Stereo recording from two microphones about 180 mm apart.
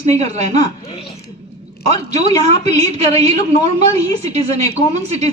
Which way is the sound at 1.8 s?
40° right (ahead or behind).